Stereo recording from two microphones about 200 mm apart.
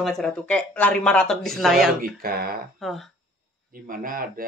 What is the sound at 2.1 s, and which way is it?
Speech, 45° right (ahead or behind).